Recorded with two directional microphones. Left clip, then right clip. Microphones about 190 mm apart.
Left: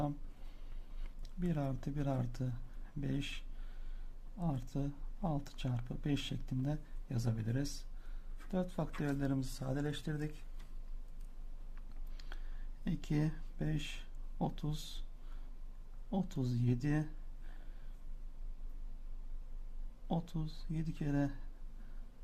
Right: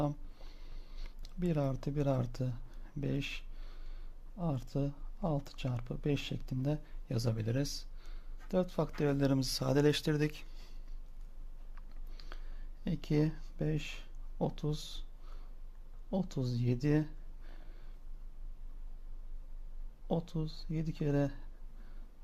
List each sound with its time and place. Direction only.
0.9 s speech: 20° right (ahead or behind); by 10.3 s 40° right (ahead or behind)
12.8 s speech: 30° right (ahead or behind)
16.0 s speech: 25° right (ahead or behind)
20.1 s speech: 25° right (ahead or behind)